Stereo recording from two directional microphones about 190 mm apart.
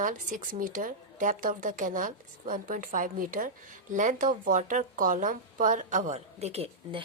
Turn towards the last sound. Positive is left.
turn(degrees=-35)  # may be behind; listen again after turning